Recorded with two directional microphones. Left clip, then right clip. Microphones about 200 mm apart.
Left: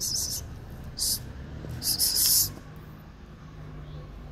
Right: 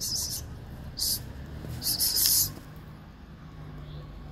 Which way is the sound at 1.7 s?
15° left (ahead or behind).